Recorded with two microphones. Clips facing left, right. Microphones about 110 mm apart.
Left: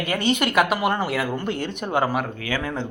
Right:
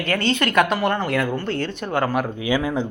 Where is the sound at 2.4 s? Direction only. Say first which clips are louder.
Right 5 dB; 15° right (ahead or behind).